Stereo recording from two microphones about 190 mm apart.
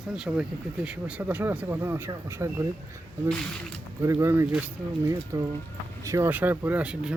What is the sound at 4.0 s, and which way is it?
Speech, 15° right (ahead or behind).